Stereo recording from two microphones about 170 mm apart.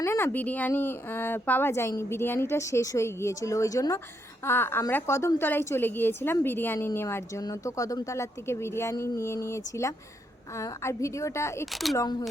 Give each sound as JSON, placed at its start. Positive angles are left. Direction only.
{"t": 0.0, "sound": "a woman's voice", "side_deg": 15}
{"t": 11.6, "sound": "speech", "side_deg": 0}